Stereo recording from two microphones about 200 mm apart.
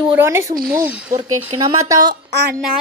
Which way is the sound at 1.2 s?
20° right (ahead or behind).